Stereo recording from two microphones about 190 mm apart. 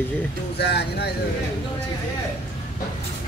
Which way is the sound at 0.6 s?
60° left (ahead or behind).